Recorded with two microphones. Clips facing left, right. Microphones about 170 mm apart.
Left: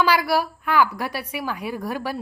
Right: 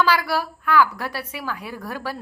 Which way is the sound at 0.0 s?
15° left (ahead or behind).